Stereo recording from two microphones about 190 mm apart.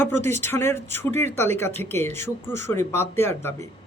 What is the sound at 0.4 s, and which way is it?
Speech, 15° left (ahead or behind).